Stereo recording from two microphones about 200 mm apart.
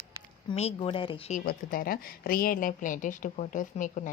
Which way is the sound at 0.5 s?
30° left (ahead or behind).